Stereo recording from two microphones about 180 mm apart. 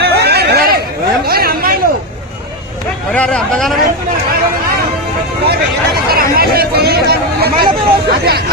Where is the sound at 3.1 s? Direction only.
5° left (ahead or behind).